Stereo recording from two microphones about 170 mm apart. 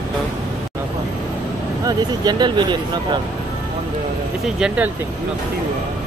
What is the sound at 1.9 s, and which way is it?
Speech, 25° right (ahead or behind).